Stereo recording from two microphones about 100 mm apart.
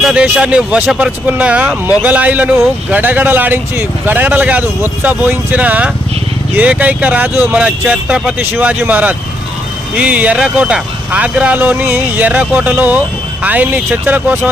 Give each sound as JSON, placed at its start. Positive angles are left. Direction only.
{"t": 0.0, "sound": "speech", "side_deg": -5}